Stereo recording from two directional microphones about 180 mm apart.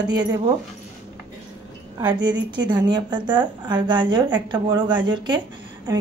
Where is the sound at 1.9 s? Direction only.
25° right (ahead or behind).